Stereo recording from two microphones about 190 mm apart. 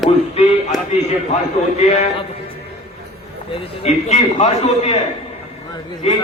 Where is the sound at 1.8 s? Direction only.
35° left (ahead or behind).